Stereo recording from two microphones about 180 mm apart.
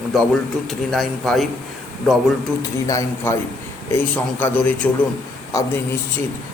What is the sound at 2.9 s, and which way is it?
A man's voice, 15° left (ahead or behind).